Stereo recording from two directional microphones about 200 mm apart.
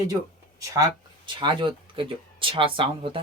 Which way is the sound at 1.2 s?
25° right (ahead or behind).